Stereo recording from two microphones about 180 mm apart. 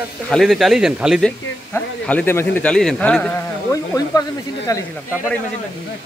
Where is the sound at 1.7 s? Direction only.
10° left (ahead or behind).